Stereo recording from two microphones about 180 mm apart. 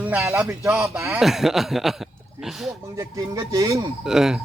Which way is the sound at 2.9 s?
20° right (ahead or behind).